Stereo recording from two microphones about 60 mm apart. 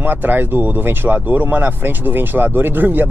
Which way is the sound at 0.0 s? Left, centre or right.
Right.